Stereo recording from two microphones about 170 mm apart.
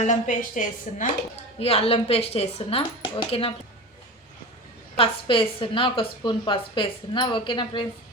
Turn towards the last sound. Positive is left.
turn(degrees=25)  # may be behind; listen again after turning